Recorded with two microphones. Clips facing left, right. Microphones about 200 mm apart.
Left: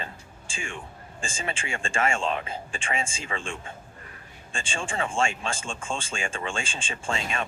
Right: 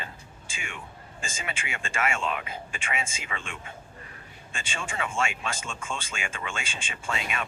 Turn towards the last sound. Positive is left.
turn(degrees=30)  # may be behind; listen again after turning